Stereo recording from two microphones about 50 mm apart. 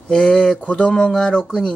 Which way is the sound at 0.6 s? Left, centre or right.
Left.